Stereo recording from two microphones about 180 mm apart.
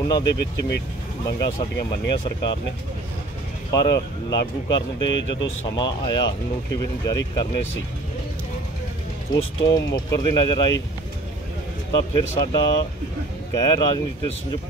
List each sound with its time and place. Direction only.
0.1 s speech: 20° left (ahead or behind)
0.6 s speech: 70° left (ahead or behind)
1.4 s speech: 20° left (ahead or behind)
3.7 s speech: 20° left (ahead or behind)
9.3 s speech: 20° left (ahead or behind)
11.9 s speech: 25° left (ahead or behind)